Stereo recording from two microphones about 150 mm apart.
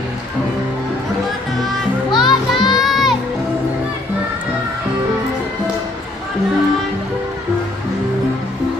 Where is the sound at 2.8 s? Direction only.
Centre (ahead or behind).